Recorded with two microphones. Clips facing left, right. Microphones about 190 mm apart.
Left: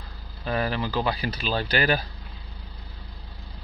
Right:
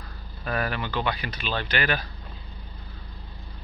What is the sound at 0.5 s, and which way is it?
Speech, 30° left (ahead or behind).